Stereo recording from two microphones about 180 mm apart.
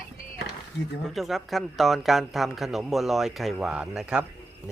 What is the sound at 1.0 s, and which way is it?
A man's voice, centre (ahead or behind).